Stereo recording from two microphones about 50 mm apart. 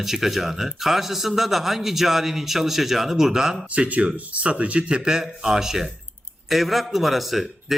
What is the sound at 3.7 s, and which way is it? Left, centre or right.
A man's voice, right.